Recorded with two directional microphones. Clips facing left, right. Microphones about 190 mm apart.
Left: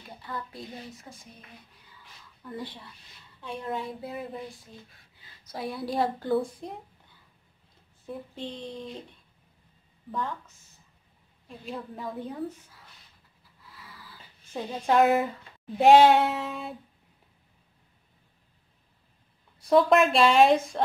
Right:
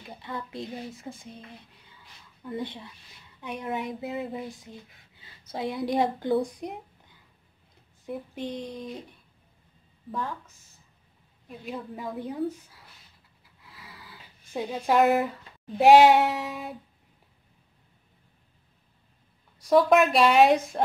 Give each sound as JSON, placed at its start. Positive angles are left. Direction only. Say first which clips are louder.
{"t": 0.0, "sound": "speech", "louder": "right 1 dB", "side_deg": -20}
{"t": 2.5, "sound": "a woman's voice", "louder": "right 4 dB", "side_deg": -20}
{"t": 10.1, "sound": "a woman's voice", "louder": "even", "side_deg": 0}
{"t": 11.4, "sound": "a woman's voice", "louder": "right 1 dB", "side_deg": -5}
{"t": 13.8, "sound": "dog", "louder": "right 1 dB", "side_deg": -20}
{"t": 14.5, "sound": "a woman's voice", "louder": "even", "side_deg": -10}
{"t": 19.7, "sound": "a woman's voice", "louder": "right 1 dB", "side_deg": -5}